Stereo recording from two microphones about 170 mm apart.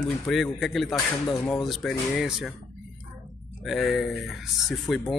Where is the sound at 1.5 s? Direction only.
Centre (ahead or behind).